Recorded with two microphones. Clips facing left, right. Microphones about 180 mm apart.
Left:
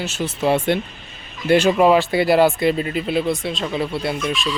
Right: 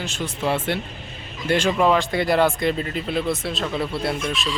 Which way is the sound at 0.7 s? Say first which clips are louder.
Left 5 dB; 20° left (ahead or behind).